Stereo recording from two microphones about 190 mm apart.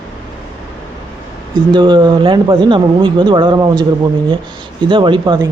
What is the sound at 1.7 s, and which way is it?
A man's voice, 25° right (ahead or behind).